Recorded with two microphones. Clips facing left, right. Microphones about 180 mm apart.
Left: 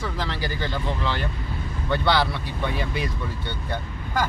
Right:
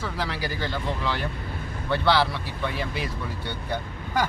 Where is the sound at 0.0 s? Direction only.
5° right (ahead or behind).